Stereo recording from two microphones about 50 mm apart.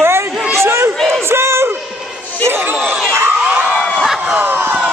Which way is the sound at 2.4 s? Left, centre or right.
Right.